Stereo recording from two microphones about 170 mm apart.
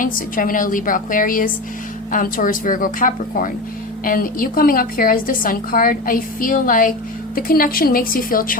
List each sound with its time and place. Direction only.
0.0 s a woman's voice: 55° left (ahead or behind)